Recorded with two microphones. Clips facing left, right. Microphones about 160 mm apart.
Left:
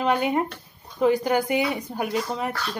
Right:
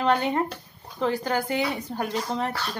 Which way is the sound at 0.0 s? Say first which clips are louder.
Left 1 dB; 10° left (ahead or behind).